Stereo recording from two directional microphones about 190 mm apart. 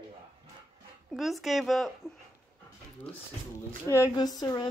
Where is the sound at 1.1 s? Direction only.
Centre (ahead or behind).